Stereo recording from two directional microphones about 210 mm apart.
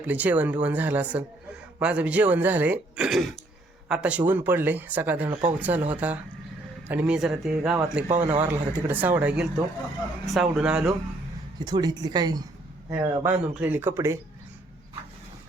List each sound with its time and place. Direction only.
0.0 s a man's voice: 5° right (ahead or behind)
11.6 s speech: 20° right (ahead or behind)